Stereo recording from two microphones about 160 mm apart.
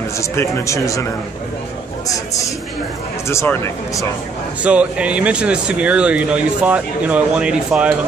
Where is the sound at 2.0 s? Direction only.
20° left (ahead or behind).